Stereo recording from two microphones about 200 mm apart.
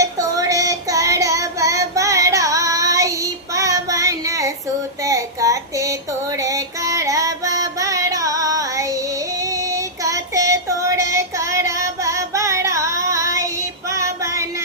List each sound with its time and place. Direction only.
0.0 s child singing: 15° right (ahead or behind)
5.0 s a sound: 15° right (ahead or behind)
6.4 s music: 15° right (ahead or behind)
9.4 s female singing: 15° right (ahead or behind)
13.9 s music: 15° right (ahead or behind)